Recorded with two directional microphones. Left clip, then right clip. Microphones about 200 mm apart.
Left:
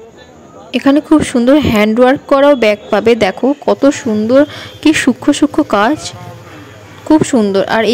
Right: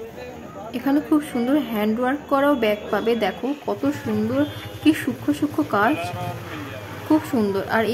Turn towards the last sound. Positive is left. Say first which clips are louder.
# left 10 dB
turn(degrees=40)  # may be behind; listen again after turning